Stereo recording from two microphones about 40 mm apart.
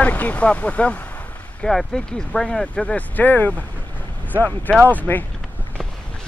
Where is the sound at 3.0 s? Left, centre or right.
Left.